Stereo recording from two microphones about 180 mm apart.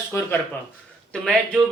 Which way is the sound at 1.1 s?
Centre (ahead or behind).